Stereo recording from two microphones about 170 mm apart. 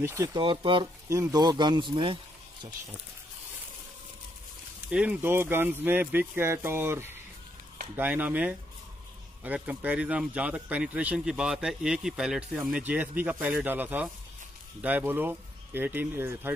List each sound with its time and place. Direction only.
0.0 s speech: 15° right (ahead or behind)
0.3 s speech: 30° right (ahead or behind)
1.0 s speech: 20° right (ahead or behind)
4.8 s speech: 5° right (ahead or behind)